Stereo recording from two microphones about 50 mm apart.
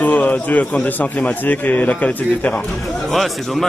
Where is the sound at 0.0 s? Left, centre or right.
Left.